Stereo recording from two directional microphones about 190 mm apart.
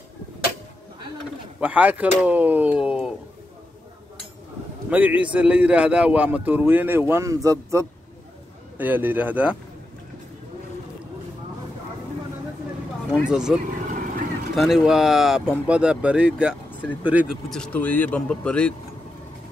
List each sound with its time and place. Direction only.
1.6 s a man's voice: 10° right (ahead or behind)
4.8 s a man's voice: 10° right (ahead or behind)
13.1 s speech: 5° right (ahead or behind)
13.7 s vehicle: 45° right (ahead or behind)
14.5 s speech: centre (ahead or behind)